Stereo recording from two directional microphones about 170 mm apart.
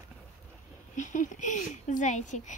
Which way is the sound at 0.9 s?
45° left (ahead or behind).